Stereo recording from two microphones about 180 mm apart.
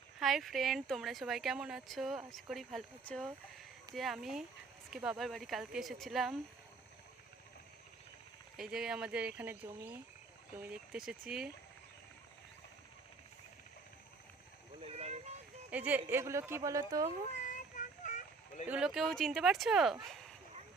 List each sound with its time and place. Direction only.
0.2 s speech: centre (ahead or behind)
8.5 s speech: centre (ahead or behind)
14.8 s a sound: 35° right (ahead or behind)
15.7 s speech: 10° right (ahead or behind)
17.4 s child singing: 45° left (ahead or behind)
18.7 s speech: 5° right (ahead or behind)